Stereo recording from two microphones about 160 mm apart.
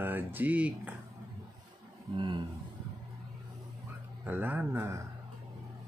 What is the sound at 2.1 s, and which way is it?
Speech, 30° right (ahead or behind).